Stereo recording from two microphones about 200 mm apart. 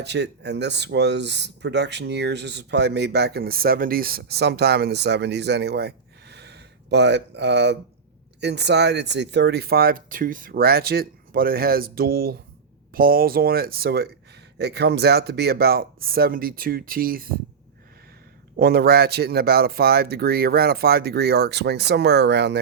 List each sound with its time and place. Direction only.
0.0 s speech: 60° right (ahead or behind)
18.6 s speech: 50° right (ahead or behind)